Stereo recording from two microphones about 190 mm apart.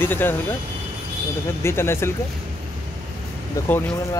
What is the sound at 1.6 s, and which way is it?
Speech, 15° left (ahead or behind).